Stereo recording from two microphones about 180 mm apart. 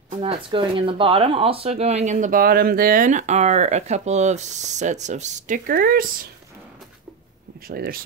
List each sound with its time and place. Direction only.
0.1 s speech: 30° right (ahead or behind); by 6.0 s 55° right (ahead or behind)
7.6 s speech: 55° right (ahead or behind)